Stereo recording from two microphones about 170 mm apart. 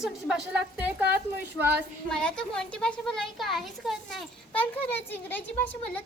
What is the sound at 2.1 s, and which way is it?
A woman's voice, 5° left (ahead or behind).